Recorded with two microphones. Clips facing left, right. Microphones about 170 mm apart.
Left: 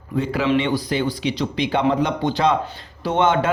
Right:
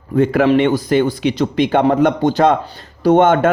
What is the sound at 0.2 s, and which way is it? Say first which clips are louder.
Speech: right 7 dB; 55° right (ahead or behind).